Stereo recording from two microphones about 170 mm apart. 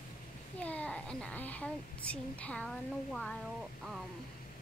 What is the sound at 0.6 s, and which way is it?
A woman's voice, 10° left (ahead or behind).